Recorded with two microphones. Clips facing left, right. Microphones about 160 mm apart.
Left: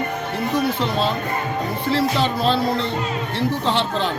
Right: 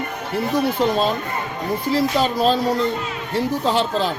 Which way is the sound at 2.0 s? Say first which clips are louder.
Right 1 dB; 10° right (ahead or behind).